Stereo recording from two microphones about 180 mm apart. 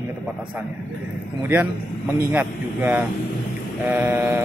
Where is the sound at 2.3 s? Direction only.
10° right (ahead or behind).